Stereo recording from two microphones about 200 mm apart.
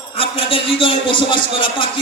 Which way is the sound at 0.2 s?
25° left (ahead or behind).